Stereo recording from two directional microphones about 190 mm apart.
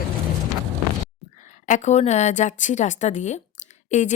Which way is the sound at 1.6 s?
40° left (ahead or behind).